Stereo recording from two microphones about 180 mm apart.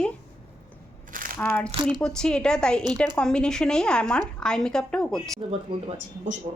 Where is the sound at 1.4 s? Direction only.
5° left (ahead or behind).